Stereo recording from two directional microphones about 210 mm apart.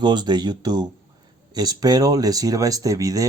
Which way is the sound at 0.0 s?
20° right (ahead or behind).